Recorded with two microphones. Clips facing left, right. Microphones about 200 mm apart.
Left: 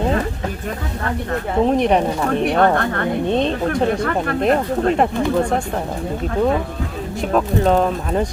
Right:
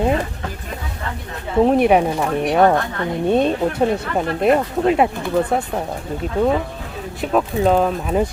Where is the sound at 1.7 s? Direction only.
10° right (ahead or behind).